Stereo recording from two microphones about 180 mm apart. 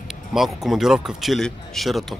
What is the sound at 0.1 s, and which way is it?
Speech, centre (ahead or behind).